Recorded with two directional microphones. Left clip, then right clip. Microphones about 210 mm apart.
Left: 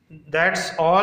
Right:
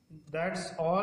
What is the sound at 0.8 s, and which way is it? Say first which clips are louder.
Speech: left 12 dB; 10° left (ahead or behind).